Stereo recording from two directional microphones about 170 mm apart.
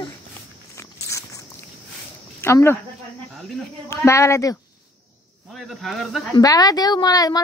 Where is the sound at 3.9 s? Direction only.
15° left (ahead or behind).